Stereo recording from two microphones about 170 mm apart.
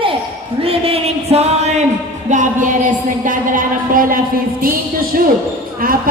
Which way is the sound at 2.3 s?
45° right (ahead or behind).